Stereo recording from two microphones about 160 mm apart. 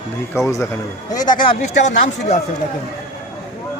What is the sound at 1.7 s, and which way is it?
Speech, 45° left (ahead or behind).